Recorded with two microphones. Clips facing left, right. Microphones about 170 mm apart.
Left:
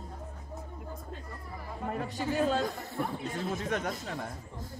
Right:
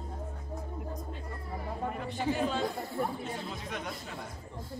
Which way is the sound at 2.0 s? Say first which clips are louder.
Left 2 dB; 40° left (ahead or behind).